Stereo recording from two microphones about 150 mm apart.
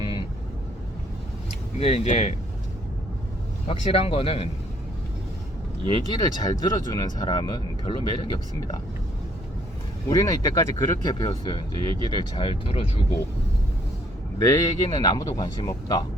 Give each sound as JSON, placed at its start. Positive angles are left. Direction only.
{"t": 0.0, "sound": "vehicle", "side_deg": 35}
{"t": 1.8, "sound": "speech", "side_deg": 45}
{"t": 3.7, "sound": "speech", "side_deg": 40}
{"t": 5.9, "sound": "speech", "side_deg": 30}
{"t": 10.1, "sound": "speech", "side_deg": 25}
{"t": 14.3, "sound": "speech", "side_deg": 25}